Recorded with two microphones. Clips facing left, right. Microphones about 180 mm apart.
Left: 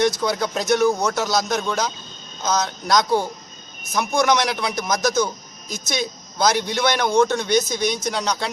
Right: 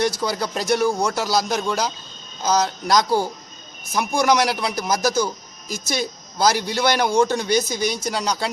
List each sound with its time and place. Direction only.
0.2 s a man's voice: 5° right (ahead or behind)